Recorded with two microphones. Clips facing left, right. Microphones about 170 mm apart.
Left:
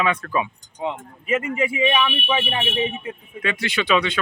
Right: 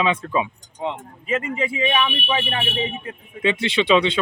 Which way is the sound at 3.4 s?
25° right (ahead or behind).